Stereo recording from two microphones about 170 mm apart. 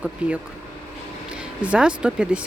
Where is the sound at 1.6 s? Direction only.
5° right (ahead or behind).